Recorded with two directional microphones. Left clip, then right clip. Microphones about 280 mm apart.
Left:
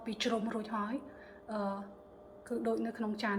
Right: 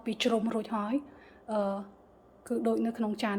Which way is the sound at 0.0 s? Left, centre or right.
Right.